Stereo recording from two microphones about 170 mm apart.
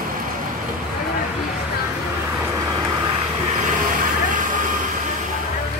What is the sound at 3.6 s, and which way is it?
Vehicle, 50° right (ahead or behind).